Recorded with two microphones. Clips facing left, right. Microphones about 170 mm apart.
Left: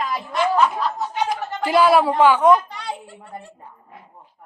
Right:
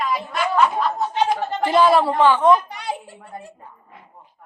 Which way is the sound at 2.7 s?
20° right (ahead or behind).